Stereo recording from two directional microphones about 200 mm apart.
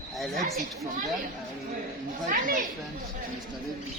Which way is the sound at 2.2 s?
40° right (ahead or behind).